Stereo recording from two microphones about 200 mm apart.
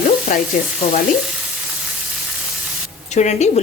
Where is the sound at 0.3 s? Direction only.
45° left (ahead or behind).